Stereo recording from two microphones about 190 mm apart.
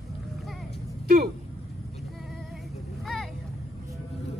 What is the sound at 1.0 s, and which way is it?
Speech, 50° right (ahead or behind).